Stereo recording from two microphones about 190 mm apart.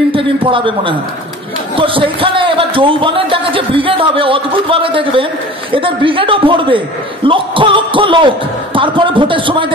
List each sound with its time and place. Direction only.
0.1 s a man's voice: 25° right (ahead or behind)